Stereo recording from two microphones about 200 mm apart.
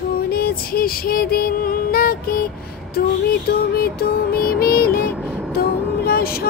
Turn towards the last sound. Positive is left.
turn(degrees=50)  # may be behind; listen again after turning